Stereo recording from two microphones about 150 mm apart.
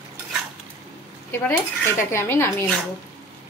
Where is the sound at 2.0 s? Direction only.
20° left (ahead or behind).